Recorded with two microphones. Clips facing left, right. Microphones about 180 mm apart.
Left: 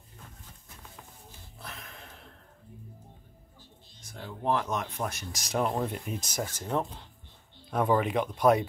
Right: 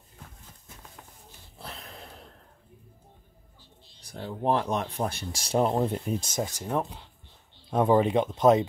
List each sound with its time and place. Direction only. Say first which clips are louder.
1.6 s a sound: right 3 dB; 30° right (ahead or behind)
4.0 s speech: right 5 dB; 35° right (ahead or behind)
6.4 s speech: left 1 dB; 15° right (ahead or behind)
7.7 s speech: right 4 dB; 25° right (ahead or behind)